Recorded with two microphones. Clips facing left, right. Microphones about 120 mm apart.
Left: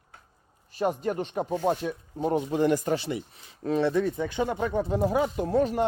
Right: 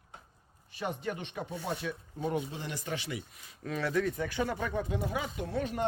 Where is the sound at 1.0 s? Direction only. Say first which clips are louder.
Left 8 dB; 40° left (ahead or behind).